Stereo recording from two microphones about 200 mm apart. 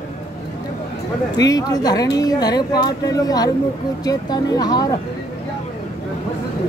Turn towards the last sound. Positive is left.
turn(degrees=20)  # may be behind; listen again after turning